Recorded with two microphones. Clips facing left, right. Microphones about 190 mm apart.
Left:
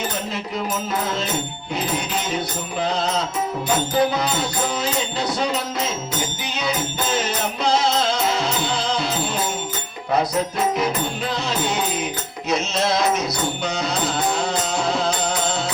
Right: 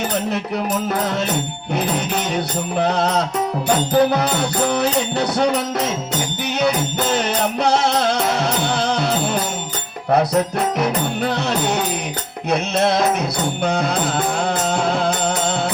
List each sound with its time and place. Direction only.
1.7 s music: 65° right (ahead or behind)
10.8 s music: 65° right (ahead or behind)